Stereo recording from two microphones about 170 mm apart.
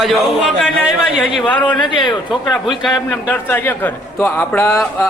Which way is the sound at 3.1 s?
15° left (ahead or behind).